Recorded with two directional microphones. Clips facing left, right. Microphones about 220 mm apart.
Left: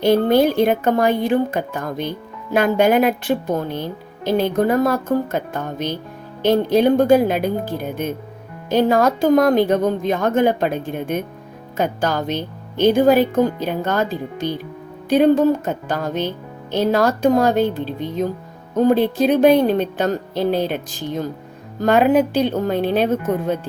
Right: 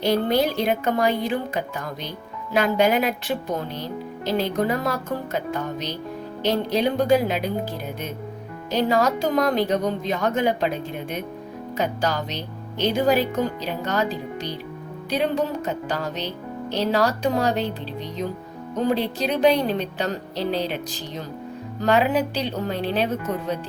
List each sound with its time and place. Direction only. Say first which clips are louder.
0.0 s speech: left 6 dB; 50° left (ahead or behind)